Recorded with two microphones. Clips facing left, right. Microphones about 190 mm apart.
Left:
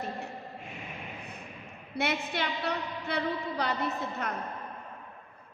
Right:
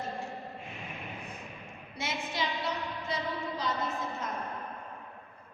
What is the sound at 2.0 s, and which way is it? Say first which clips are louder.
A woman's voice: left 4 dB; 60° left (ahead or behind).